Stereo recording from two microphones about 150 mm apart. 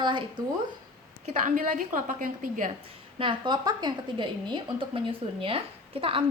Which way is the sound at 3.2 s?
30° right (ahead or behind).